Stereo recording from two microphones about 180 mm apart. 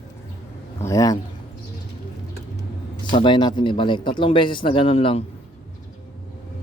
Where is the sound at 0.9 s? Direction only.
20° left (ahead or behind).